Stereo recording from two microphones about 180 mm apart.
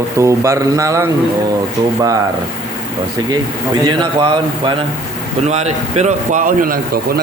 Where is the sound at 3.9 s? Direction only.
25° right (ahead or behind).